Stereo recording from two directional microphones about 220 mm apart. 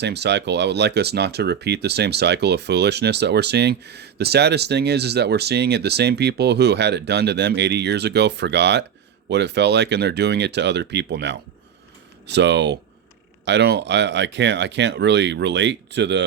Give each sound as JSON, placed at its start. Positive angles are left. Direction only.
{"t": 0.0, "sound": "speech", "side_deg": -50}